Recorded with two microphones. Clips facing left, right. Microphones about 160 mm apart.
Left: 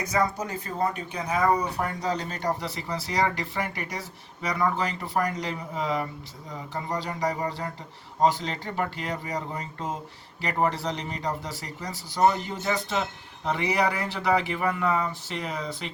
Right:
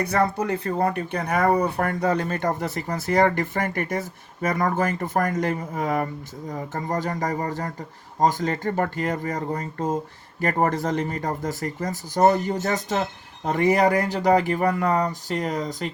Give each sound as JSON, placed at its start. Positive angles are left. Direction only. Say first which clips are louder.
{"t": 0.0, "sound": "speech", "louder": "right 4 dB", "side_deg": -60}